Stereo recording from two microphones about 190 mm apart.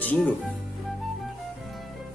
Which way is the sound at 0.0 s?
10° left (ahead or behind).